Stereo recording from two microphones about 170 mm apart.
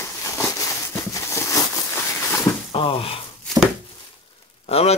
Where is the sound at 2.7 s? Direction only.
30° left (ahead or behind).